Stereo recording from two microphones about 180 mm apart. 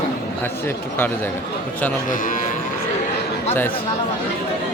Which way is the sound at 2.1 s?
50° left (ahead or behind).